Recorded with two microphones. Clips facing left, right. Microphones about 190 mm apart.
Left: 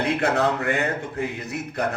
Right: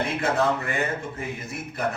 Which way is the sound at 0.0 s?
65° left (ahead or behind).